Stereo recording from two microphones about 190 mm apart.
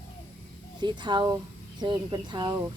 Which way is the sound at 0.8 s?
25° right (ahead or behind).